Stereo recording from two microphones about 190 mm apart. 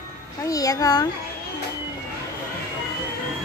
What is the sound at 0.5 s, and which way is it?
Speech, 20° left (ahead or behind).